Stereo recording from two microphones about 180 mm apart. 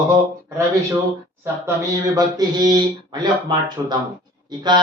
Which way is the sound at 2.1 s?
20° right (ahead or behind).